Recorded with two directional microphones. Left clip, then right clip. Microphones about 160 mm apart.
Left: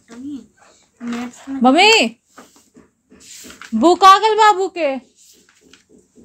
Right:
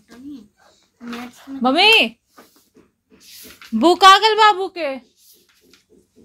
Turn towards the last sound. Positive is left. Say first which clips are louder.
# left 5 dB
turn(degrees=25)  # may be behind; listen again after turning